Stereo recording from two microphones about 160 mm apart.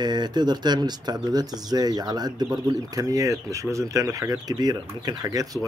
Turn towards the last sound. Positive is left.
turn(degrees=-25)  # may be behind; listen again after turning